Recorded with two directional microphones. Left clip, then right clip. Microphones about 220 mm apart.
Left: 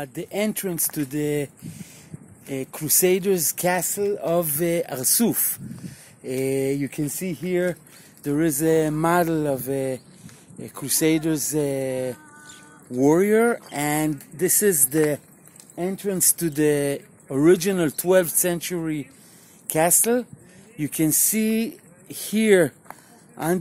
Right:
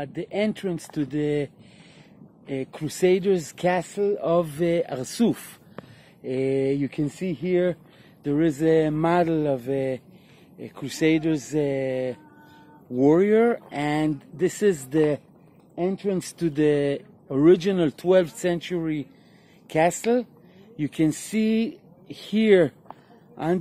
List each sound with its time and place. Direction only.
0.0 s speech: 10° left (ahead or behind)